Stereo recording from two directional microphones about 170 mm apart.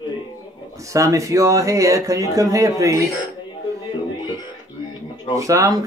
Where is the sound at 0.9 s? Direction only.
20° right (ahead or behind).